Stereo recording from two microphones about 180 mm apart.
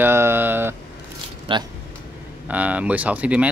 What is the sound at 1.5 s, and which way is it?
Speech, 30° right (ahead or behind).